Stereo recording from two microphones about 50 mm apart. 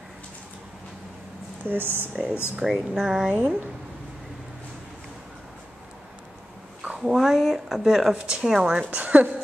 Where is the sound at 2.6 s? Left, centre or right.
Centre.